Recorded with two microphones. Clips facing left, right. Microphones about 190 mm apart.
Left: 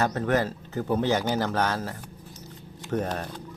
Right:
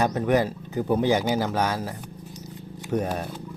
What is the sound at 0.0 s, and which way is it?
Speech, 15° right (ahead or behind).